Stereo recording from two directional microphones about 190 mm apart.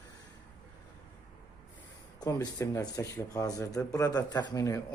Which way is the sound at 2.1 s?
20° left (ahead or behind).